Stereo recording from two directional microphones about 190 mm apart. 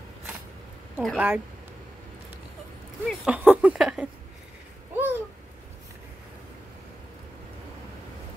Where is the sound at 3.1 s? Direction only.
5° right (ahead or behind).